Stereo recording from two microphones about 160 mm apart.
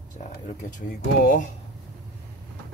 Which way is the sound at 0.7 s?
55° left (ahead or behind).